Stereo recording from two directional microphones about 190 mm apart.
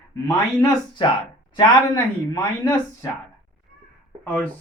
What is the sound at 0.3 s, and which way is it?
Speech, 15° left (ahead or behind).